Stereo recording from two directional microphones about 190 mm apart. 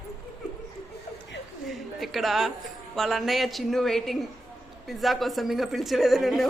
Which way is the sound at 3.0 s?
Centre (ahead or behind).